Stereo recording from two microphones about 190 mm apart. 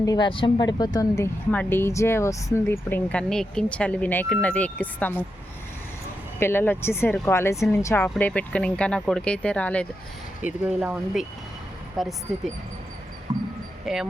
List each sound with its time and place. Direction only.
0.0 s speech: 20° left (ahead or behind)
6.4 s speech: 10° left (ahead or behind)
10.4 s speech: 5° right (ahead or behind)
13.3 s a sound: 25° right (ahead or behind)
13.8 s speech: centre (ahead or behind)